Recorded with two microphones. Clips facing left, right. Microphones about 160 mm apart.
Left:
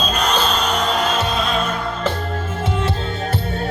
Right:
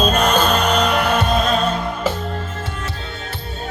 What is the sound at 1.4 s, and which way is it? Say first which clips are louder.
Music: right 3 dB; 40° right (ahead or behind).